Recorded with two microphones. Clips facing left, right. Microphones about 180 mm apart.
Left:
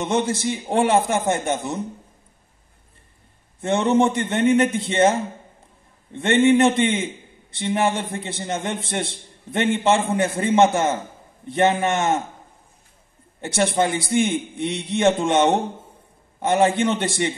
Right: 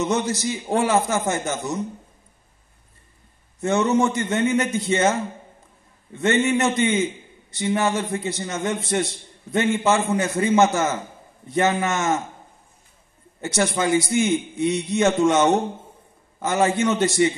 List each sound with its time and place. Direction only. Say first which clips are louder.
0.0 s a man's voice: left 1 dB; 25° left (ahead or behind)
3.6 s a man's voice: left 1 dB; 30° left (ahead or behind)
13.6 s a man's voice: even; 30° left (ahead or behind)